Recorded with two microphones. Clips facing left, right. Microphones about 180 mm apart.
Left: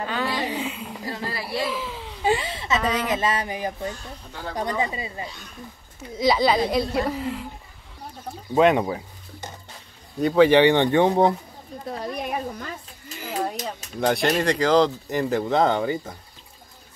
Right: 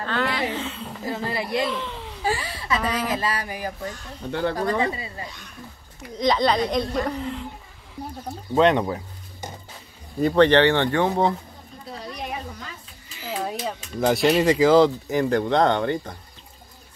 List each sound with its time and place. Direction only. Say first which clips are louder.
0.0 s a sound: right 1 dB; 10° left (ahead or behind)
1.0 s speech: right 4 dB; 20° right (ahead or behind)
1.6 s a sound: right 1 dB; 5° left (ahead or behind)
2.2 s a sound: left 3 dB; 25° left (ahead or behind)
2.8 s speech: left 1 dB; centre (ahead or behind)
3.1 s speech: left 2 dB; 20° left (ahead or behind)
4.3 s speech: right 11 dB; 70° right (ahead or behind)
4.6 s speech: right 2 dB; 20° left (ahead or behind)
6.1 s speech: left 1 dB; 5° left (ahead or behind)
8.5 s speech: even; 10° left (ahead or behind)
10.1 s speech: left 1 dB; centre (ahead or behind)
11.9 s a sound: left 4 dB; 50° left (ahead or behind)
13.9 s speech: right 2 dB; centre (ahead or behind)